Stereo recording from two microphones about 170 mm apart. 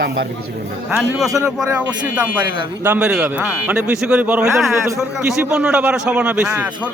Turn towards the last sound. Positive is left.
turn(degrees=-10)  # may be behind; listen again after turning